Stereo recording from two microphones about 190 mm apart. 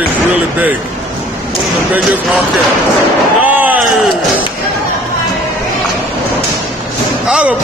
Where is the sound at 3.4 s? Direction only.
10° right (ahead or behind).